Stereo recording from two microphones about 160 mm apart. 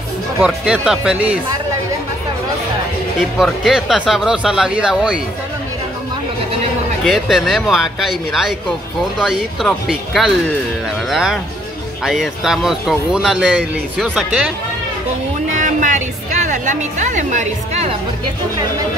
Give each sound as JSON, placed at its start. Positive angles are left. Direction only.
{"t": 0.4, "sound": "speech", "side_deg": -5}
{"t": 3.3, "sound": "speech", "side_deg": 0}
{"t": 7.1, "sound": "speech", "side_deg": 0}
{"t": 15.5, "sound": "a woman's voice", "side_deg": -50}